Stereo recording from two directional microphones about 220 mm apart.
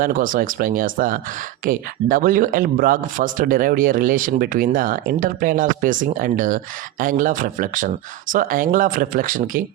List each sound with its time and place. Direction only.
0.0 s speech: 40° right (ahead or behind)